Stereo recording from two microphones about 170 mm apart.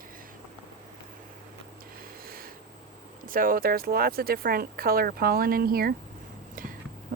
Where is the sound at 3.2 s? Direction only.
55° right (ahead or behind).